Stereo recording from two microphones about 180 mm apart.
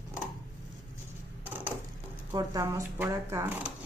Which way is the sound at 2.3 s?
20° right (ahead or behind).